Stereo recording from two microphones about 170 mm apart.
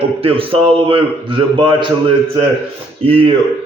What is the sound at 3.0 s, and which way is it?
Speech, 30° right (ahead or behind).